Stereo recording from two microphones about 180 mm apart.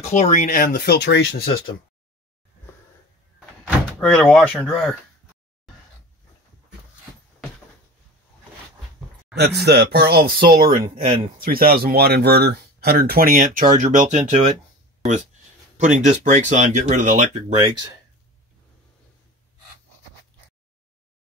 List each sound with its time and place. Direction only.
0.1 s speech: 40° left (ahead or behind); by 1.3 s 70° left (ahead or behind)
3.3 s door: centre (ahead or behind)
9.3 s speech: 65° right (ahead or behind)
10.5 s speech: 25° right (ahead or behind)
11.3 s speech: 55° right (ahead or behind)
15.8 s speech: 40° right (ahead or behind)